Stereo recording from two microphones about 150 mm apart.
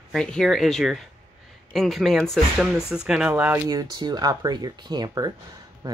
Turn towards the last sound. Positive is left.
turn(degrees=-25)  # may be behind; listen again after turning